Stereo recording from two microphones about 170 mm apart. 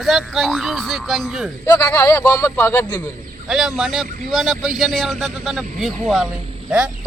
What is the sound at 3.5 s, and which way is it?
Speech, centre (ahead or behind).